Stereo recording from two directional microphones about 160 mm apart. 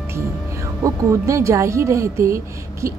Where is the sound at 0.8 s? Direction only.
20° right (ahead or behind).